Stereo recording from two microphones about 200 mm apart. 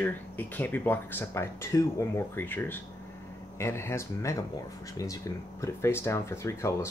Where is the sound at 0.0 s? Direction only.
10° left (ahead or behind).